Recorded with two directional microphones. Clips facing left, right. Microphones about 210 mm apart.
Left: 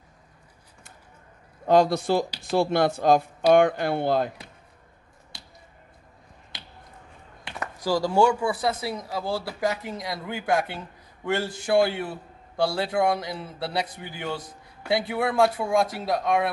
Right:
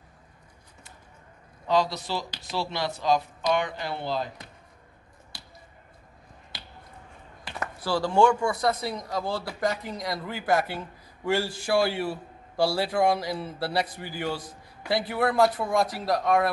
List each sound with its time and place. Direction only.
1.7 s speech: 50° left (ahead or behind)
7.8 s a man's voice: 10° left (ahead or behind)